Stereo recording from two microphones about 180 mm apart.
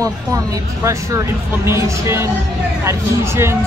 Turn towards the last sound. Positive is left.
turn(degrees=-15)  # may be behind; listen again after turning